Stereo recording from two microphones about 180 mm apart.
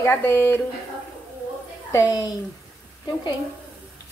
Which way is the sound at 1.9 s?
20° left (ahead or behind).